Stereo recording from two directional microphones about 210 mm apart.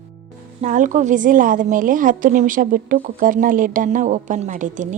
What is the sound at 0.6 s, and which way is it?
A woman's voice, 35° right (ahead or behind).